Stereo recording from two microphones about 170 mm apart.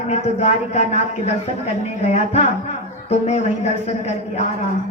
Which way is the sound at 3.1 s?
40° left (ahead or behind).